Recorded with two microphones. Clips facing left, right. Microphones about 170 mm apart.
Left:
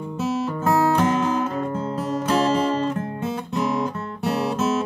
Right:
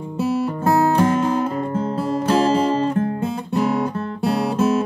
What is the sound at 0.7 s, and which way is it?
Music, 30° right (ahead or behind).